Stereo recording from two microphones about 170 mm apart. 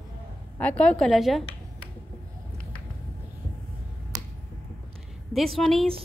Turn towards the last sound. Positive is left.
turn(degrees=0)  # may be behind; listen again after turning